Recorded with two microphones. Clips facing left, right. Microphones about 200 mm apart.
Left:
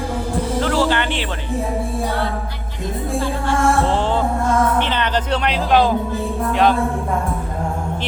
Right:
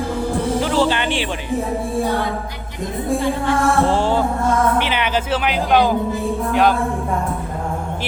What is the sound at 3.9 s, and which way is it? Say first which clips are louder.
Music: right 2 dB; 10° right (ahead or behind).